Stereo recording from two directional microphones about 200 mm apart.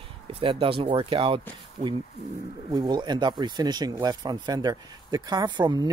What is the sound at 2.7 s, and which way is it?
Speech, 20° right (ahead or behind).